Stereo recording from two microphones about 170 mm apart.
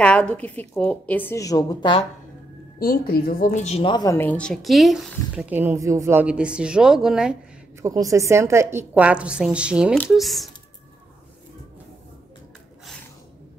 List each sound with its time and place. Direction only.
0.0 s a woman's voice: 5° left (ahead or behind); by 2.0 s 25° left (ahead or behind)
2.8 s speech: 60° left (ahead or behind); by 3.9 s 40° left (ahead or behind)
3.9 s speech: 20° left (ahead or behind); by 7.3 s 5° right (ahead or behind)
7.8 s a woman's voice: 20° right (ahead or behind); by 10.5 s centre (ahead or behind)